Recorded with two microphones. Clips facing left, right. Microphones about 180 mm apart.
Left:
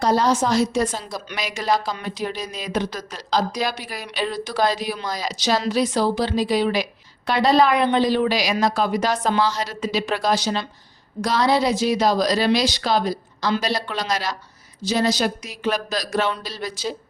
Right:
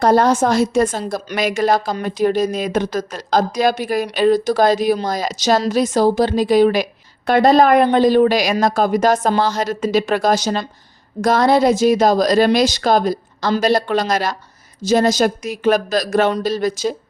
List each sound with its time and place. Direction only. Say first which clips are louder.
0.0 s a woman's voice: right 5 dB; 55° right (ahead or behind)